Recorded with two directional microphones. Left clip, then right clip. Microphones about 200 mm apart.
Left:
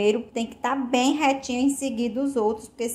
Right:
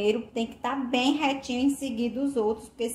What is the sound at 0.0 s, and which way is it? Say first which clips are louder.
Speech: left 3 dB; 30° left (ahead or behind).